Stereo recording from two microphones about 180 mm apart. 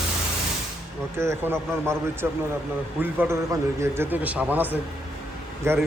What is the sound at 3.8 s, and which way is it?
Speech, 10° right (ahead or behind).